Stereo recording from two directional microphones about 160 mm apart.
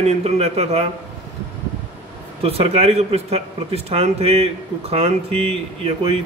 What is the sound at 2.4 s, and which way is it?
Speech, 40° right (ahead or behind).